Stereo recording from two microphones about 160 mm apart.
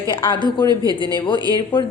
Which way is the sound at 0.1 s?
30° left (ahead or behind).